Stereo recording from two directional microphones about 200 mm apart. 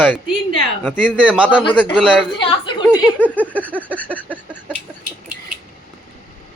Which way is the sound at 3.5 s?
10° left (ahead or behind).